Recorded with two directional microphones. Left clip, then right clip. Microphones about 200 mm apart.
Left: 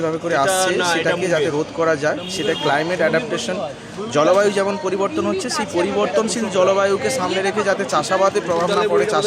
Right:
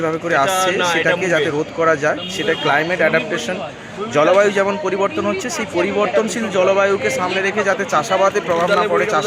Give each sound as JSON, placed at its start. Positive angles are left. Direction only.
{"t": 0.0, "sound": "speech", "side_deg": 0}
{"t": 0.5, "sound": "a man's voice", "side_deg": 65}
{"t": 1.8, "sound": "a man's voice", "side_deg": 5}